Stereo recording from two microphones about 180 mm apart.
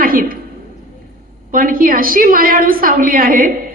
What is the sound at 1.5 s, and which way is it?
A woman's voice, 50° right (ahead or behind).